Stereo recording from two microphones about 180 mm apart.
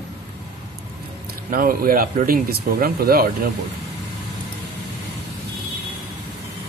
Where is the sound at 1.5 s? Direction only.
50° right (ahead or behind).